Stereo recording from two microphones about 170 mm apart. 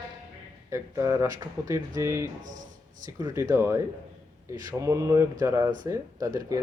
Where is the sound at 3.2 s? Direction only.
20° right (ahead or behind).